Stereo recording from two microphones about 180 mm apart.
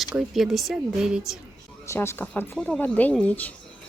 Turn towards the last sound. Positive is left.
turn(degrees=10)  # may be behind; listen again after turning